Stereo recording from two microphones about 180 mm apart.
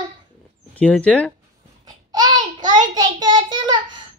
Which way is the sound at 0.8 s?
5° left (ahead or behind).